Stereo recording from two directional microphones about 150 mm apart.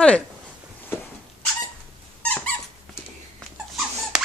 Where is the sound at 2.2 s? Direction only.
10° left (ahead or behind).